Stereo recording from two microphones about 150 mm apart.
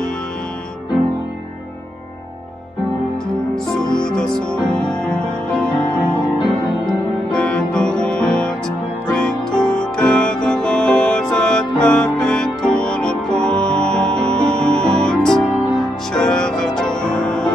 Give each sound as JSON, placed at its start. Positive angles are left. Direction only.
{"t": 3.8, "sound": "music", "side_deg": 30}
{"t": 4.1, "sound": "music", "side_deg": 5}
{"t": 7.3, "sound": "music", "side_deg": 5}